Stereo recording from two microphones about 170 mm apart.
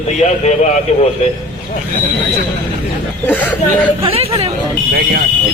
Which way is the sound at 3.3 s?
10° left (ahead or behind).